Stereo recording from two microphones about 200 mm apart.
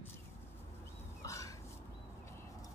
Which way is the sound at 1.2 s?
15° left (ahead or behind).